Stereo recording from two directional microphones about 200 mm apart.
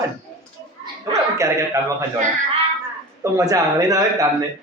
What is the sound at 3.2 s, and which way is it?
A man's voice, 15° right (ahead or behind).